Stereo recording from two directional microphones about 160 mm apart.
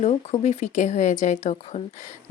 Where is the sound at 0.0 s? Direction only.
45° left (ahead or behind).